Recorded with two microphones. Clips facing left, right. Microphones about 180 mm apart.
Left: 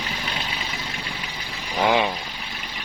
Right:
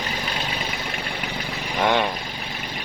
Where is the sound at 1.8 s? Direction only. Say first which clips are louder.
Left 1 dB; centre (ahead or behind).